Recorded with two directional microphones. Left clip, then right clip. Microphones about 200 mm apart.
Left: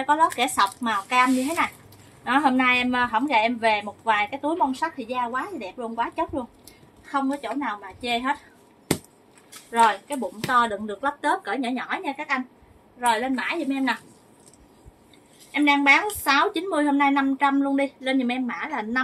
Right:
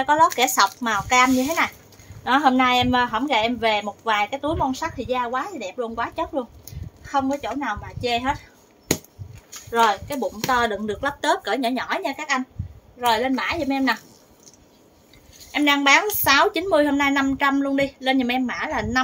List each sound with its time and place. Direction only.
0.0 s a woman's voice: 45° right (ahead or behind)
9.8 s a woman's voice: 35° right (ahead or behind); by 12.4 s 55° right (ahead or behind)
13.1 s a woman's voice: 40° right (ahead or behind)
15.5 s a woman's voice: 45° right (ahead or behind)